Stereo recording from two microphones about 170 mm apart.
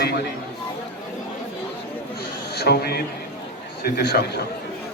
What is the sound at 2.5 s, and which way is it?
A man's voice, 70° left (ahead or behind).